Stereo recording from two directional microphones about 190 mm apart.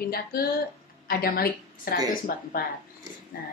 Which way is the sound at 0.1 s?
55° left (ahead or behind).